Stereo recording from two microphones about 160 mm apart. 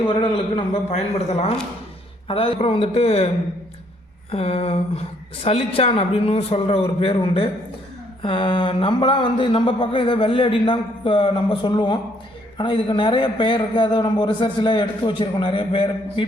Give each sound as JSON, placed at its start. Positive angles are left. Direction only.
{"t": 0.1, "sound": "speech", "side_deg": 35}
{"t": 4.3, "sound": "speech", "side_deg": 35}